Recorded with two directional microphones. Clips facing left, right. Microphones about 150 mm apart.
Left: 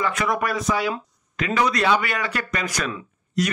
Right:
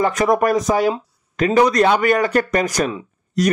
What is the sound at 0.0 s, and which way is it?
Speech, 40° right (ahead or behind).